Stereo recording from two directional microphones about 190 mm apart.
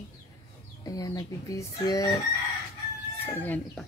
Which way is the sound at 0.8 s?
20° left (ahead or behind).